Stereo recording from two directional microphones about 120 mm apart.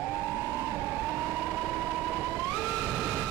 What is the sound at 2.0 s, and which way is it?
Vehicle, centre (ahead or behind).